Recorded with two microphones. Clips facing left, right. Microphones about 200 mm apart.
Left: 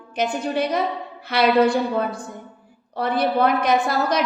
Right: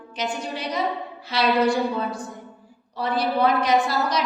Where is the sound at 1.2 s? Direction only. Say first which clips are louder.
Left 4 dB; 55° left (ahead or behind).